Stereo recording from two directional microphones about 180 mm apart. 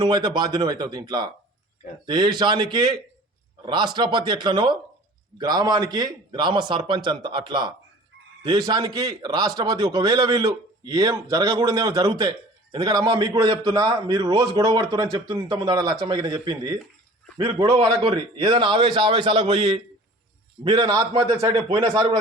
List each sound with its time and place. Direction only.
0.0 s a man's voice: 25° right (ahead or behind)